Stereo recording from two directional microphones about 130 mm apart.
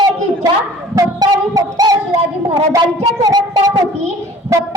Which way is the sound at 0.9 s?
30° right (ahead or behind).